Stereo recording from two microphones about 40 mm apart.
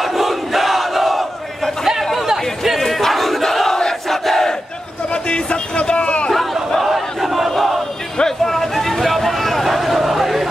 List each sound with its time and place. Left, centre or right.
0.0 s battle cry: centre
2.1 s chatter: centre
2.8 s battle cry: centre
3.8 s crowd: centre
5.1 s a sound: left
6.8 s battle cry: centre
8.2 s a sound: centre